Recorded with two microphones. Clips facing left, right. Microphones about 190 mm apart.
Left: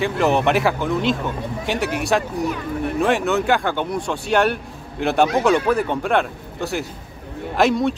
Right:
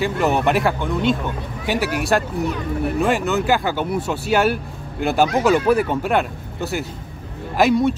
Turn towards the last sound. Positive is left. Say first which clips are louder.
# right 1 dB
turn(degrees=0)  # may be behind; listen again after turning